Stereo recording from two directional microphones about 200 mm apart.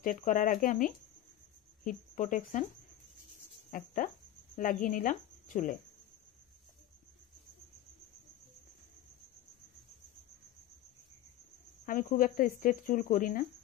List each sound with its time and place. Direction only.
0.0 s speech: 40° left (ahead or behind)
3.7 s speech: 40° left (ahead or behind)
11.8 s speech: 40° left (ahead or behind)